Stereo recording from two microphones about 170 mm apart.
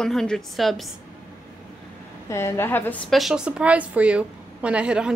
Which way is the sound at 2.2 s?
15° left (ahead or behind).